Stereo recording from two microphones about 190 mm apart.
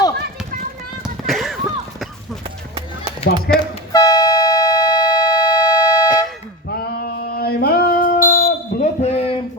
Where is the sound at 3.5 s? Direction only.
55° left (ahead or behind).